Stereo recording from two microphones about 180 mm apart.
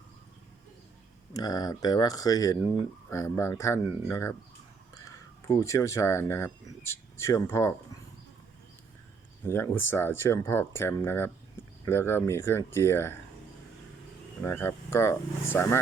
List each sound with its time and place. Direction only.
1.3 s speech: 20° left (ahead or behind)
9.4 s speech: 10° left (ahead or behind)
14.4 s speech: 15° left (ahead or behind)